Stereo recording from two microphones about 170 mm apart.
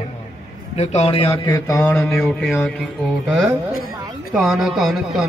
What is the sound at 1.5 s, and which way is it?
Mantra, 15° left (ahead or behind).